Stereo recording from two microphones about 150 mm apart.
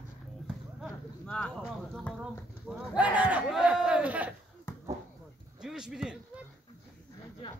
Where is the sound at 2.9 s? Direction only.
10° right (ahead or behind).